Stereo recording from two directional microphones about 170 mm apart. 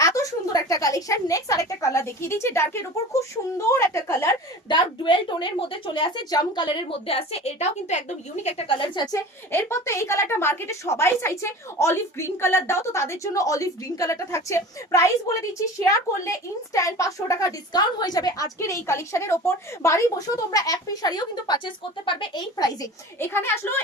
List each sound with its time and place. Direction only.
0.0 s a woman's voice: 20° left (ahead or behind)
4.7 s a woman's voice: 25° left (ahead or behind)
9.1 s a woman's voice: 15° left (ahead or behind)